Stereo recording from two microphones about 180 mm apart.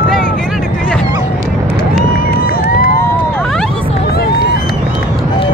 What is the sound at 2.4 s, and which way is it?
Crowd, 55° left (ahead or behind).